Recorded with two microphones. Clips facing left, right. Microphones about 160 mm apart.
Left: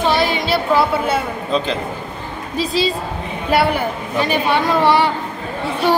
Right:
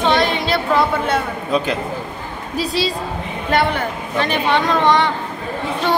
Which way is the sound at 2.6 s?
Centre (ahead or behind).